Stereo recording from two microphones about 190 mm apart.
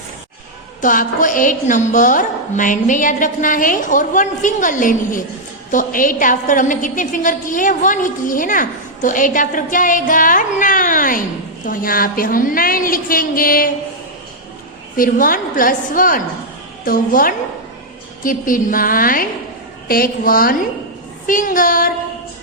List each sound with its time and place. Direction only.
0.8 s a woman's voice: 45° left (ahead or behind)
14.9 s a woman's voice: 45° left (ahead or behind)